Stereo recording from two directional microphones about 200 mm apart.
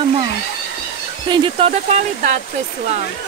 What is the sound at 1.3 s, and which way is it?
Speech, 25° right (ahead or behind).